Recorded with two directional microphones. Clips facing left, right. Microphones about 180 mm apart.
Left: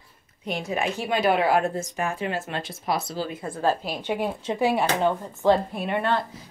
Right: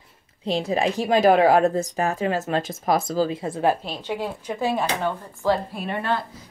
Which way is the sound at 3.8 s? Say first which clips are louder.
Left 1 dB; 15° left (ahead or behind).